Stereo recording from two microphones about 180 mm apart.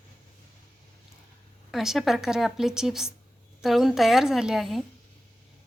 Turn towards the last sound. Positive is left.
turn(degrees=0)  # may be behind; listen again after turning